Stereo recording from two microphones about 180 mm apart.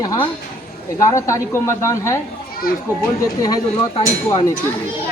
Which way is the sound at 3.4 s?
20° left (ahead or behind).